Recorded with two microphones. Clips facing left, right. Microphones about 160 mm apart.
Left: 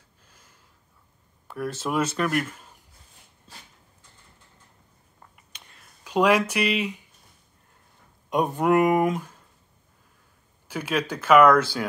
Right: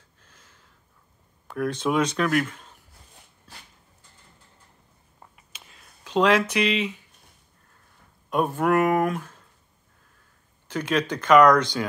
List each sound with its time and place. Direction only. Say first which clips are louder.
0.2 s gasp: right 1 dB; 10° left (ahead or behind)
1.5 s speech: right 3 dB; 5° left (ahead or behind)
5.5 s a sound: right 1 dB; centre (ahead or behind)
6.0 s speech: even; 10° left (ahead or behind)
8.3 s speech: left 1 dB; 20° left (ahead or behind)
10.7 s speech: right 2 dB; 10° left (ahead or behind)